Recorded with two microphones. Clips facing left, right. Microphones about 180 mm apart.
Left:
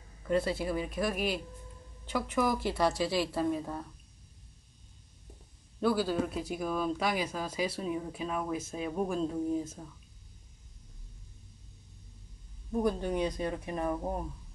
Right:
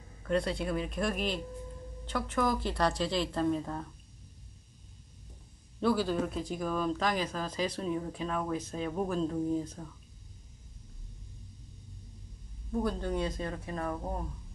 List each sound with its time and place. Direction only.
0.3 s speech: 5° left (ahead or behind)
5.8 s speech: 5° left (ahead or behind)
12.7 s speech: 15° left (ahead or behind)